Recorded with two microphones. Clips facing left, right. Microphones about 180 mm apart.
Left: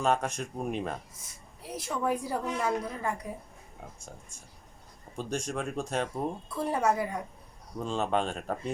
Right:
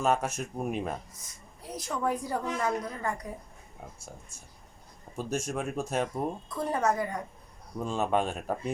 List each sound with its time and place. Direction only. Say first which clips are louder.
0.0 s speech: even; 5° right (ahead or behind)
1.6 s a sound: left 1 dB; 30° left (ahead or behind)
2.0 s a woman's voice: even; 10° left (ahead or behind)
4.3 s speech: even; 5° right (ahead or behind)
6.5 s a woman's voice: left 1 dB; 10° left (ahead or behind)
7.8 s speech: right 1 dB; 10° right (ahead or behind)